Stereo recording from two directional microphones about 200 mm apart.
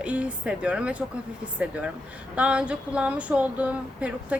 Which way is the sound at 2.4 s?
5° right (ahead or behind).